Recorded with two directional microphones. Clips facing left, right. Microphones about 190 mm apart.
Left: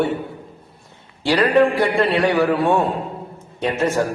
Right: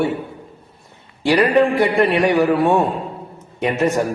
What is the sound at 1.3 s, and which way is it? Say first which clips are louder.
A man's voice: right 1 dB; 15° right (ahead or behind).